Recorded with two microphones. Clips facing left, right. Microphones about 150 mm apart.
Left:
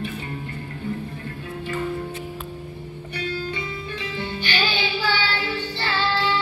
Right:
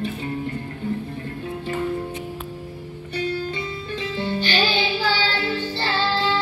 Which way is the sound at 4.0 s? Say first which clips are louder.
Right 7 dB; 30° right (ahead or behind).